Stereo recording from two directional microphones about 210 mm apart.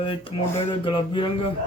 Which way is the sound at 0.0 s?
25° left (ahead or behind).